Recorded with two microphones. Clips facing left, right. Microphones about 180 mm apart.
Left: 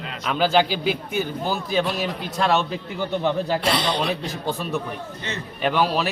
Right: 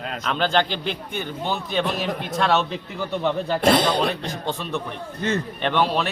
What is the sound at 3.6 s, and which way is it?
Speech, 50° right (ahead or behind).